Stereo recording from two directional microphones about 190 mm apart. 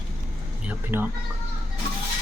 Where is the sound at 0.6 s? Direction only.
10° right (ahead or behind).